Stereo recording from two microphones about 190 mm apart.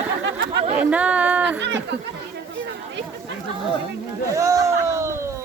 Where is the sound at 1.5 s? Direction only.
65° right (ahead or behind).